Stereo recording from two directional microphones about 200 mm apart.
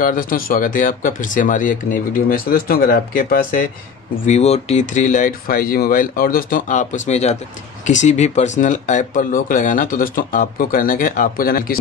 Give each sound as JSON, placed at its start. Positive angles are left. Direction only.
{"t": 0.0, "sound": "speech", "side_deg": 45}
{"t": 4.3, "sound": "speech", "side_deg": 30}